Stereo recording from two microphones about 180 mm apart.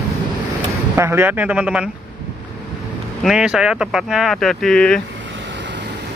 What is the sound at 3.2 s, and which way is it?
Speech, 5° right (ahead or behind).